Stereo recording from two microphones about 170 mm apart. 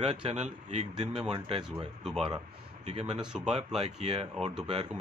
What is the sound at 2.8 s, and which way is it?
Speech, 40° right (ahead or behind).